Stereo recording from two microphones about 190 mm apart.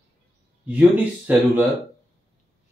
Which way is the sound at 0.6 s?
5° right (ahead or behind).